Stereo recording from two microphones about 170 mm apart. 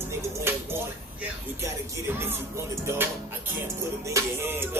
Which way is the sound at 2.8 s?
15° right (ahead or behind).